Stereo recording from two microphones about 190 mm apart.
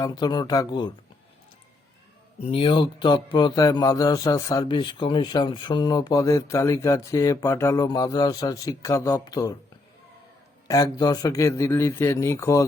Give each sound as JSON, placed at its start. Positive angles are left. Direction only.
{"t": 0.0, "sound": "speech", "side_deg": 20}
{"t": 2.4, "sound": "speech", "side_deg": 30}
{"t": 10.7, "sound": "a man's voice", "side_deg": 15}